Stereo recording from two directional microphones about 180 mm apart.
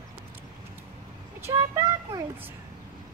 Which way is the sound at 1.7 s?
15° right (ahead or behind).